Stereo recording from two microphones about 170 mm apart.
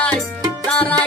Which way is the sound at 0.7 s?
5° left (ahead or behind).